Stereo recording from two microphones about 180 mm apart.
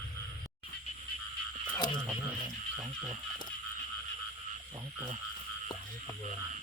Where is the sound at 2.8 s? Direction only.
20° right (ahead or behind).